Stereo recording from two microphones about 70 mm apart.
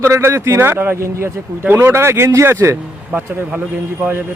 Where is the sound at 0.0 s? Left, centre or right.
Right.